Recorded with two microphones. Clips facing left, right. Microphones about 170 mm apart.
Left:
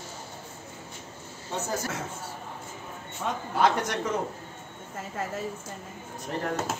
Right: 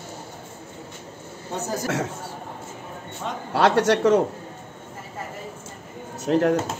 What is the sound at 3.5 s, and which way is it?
Speech, 75° right (ahead or behind).